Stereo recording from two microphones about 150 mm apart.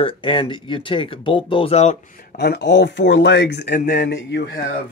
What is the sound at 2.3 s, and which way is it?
Speech, 90° left.